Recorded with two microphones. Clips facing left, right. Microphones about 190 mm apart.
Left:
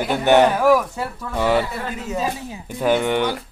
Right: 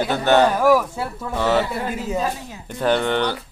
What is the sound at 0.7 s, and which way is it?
Speech, 10° right (ahead or behind).